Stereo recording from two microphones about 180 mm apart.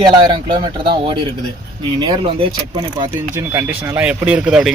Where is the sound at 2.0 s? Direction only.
25° right (ahead or behind).